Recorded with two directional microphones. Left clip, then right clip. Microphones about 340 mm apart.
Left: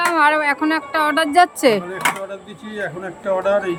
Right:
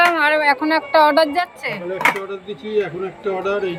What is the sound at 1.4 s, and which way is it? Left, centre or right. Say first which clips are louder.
Speech: left 9 dB; centre.